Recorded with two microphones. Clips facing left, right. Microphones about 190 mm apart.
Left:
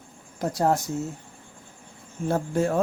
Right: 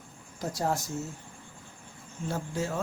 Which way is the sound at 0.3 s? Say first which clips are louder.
Left 7 dB; 60° left (ahead or behind).